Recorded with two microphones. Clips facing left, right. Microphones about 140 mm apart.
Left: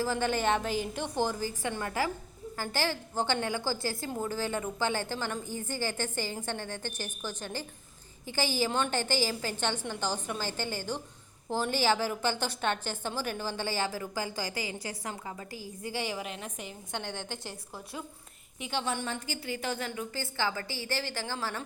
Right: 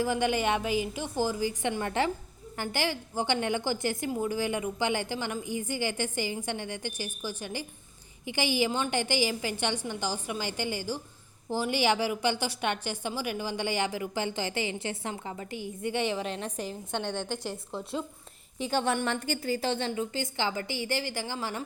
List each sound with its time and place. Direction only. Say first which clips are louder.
0.0 s a woman's voice: right 2 dB; 15° right (ahead or behind)
17.1 s a woman's voice: right 6 dB; 15° left (ahead or behind)
17.4 s a woman's voice: right 7 dB; 20° right (ahead or behind)
18.6 s a woman's voice: right 5 dB; 45° right (ahead or behind)
18.9 s a woman's voice: right 5 dB; 65° right (ahead or behind)
19.5 s a woman's voice: right 5 dB; 30° right (ahead or behind); by 21.6 s 15° right (ahead or behind)